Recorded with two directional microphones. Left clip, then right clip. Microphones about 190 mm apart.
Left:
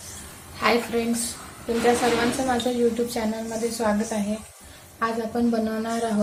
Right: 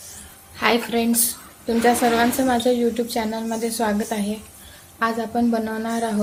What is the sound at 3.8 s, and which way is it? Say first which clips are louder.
Speech: right 1 dB; 40° right (ahead or behind).